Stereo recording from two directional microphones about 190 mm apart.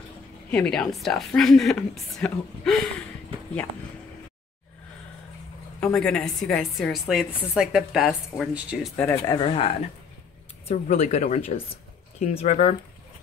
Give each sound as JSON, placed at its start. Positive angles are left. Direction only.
{"t": 0.5, "sound": "a woman's voice", "side_deg": 5}
{"t": 5.9, "sound": "a woman's voice", "side_deg": 5}
{"t": 8.9, "sound": "speech", "side_deg": 10}
{"t": 9.2, "sound": "speech", "side_deg": 25}
{"t": 10.7, "sound": "speech", "side_deg": 35}